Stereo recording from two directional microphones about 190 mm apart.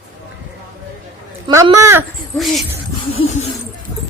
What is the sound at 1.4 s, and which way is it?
Speech, 20° right (ahead or behind).